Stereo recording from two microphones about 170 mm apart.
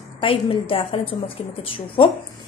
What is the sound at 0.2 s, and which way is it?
A woman's voice, 30° left (ahead or behind).